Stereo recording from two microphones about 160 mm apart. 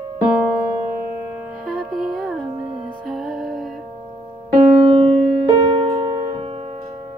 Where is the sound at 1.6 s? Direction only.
Centre (ahead or behind).